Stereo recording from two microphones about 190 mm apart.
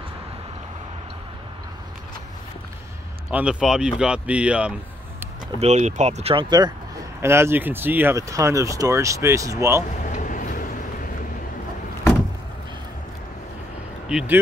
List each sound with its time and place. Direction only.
3.3 s speech: 5° right (ahead or behind)
5.6 s speech: 35° right (ahead or behind)
7.2 s speech: 15° right (ahead or behind)
10.0 s vehicle: 40° left (ahead or behind)
14.0 s speech: 5° right (ahead or behind)